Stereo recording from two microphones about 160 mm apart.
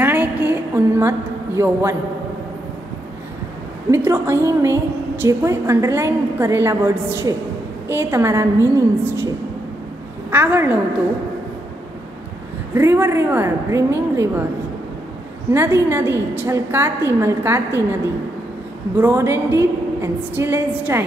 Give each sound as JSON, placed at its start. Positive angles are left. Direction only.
{"t": 0.0, "sound": "a sound", "side_deg": -10}
{"t": 3.9, "sound": "a woman's voice", "side_deg": -15}
{"t": 10.3, "sound": "a woman's voice", "side_deg": -15}
{"t": 12.7, "sound": "a woman's voice", "side_deg": -15}
{"t": 15.5, "sound": "a woman's voice", "side_deg": -15}
{"t": 18.9, "sound": "a woman's voice", "side_deg": -15}